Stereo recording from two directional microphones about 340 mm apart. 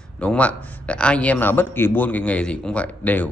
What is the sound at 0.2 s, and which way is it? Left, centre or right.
A man's voice, centre.